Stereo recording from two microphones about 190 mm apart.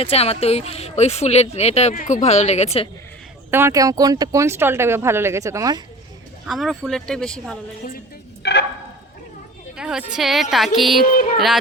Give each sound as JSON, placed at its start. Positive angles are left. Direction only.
{"t": 0.0, "sound": "speech", "side_deg": 30}
{"t": 3.5, "sound": "speech", "side_deg": -15}
{"t": 6.4, "sound": "speech", "side_deg": 0}
{"t": 8.4, "sound": "a sound", "side_deg": 60}
{"t": 9.7, "sound": "a sound", "side_deg": -5}
{"t": 10.2, "sound": "speech", "side_deg": 0}
{"t": 11.0, "sound": "music", "side_deg": 45}
{"t": 11.3, "sound": "speech", "side_deg": 0}